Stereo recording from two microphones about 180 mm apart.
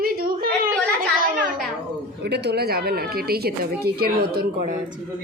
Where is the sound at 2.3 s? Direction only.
65° right (ahead or behind).